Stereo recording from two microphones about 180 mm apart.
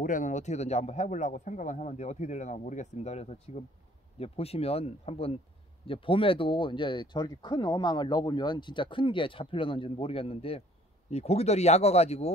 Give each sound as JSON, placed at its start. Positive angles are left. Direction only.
{"t": 0.0, "sound": "speech", "side_deg": 45}